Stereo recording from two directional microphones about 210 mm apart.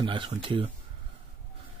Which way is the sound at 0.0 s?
25° right (ahead or behind).